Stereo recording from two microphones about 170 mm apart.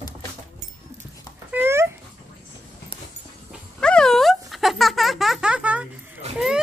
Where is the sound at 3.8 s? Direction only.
5° left (ahead or behind).